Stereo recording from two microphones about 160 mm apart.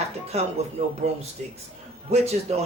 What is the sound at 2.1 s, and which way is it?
Speech, 40° right (ahead or behind).